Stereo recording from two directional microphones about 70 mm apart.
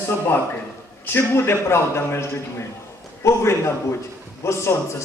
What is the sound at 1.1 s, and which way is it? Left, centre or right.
A man's voice, left.